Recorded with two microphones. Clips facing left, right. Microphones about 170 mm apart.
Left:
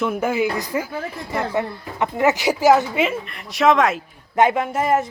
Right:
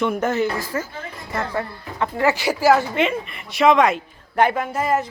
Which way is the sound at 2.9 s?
Centre (ahead or behind).